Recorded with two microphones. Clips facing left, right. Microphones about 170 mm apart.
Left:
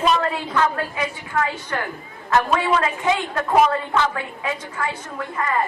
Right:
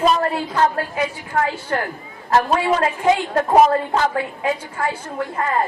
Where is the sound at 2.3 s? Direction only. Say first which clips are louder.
Right 2 dB; 35° right (ahead or behind).